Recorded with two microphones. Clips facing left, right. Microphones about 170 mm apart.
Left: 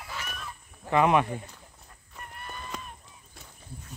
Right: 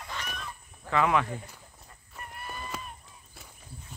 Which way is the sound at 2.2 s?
5° right (ahead or behind).